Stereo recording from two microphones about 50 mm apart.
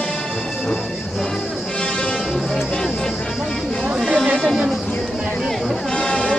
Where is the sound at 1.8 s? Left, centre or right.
Centre.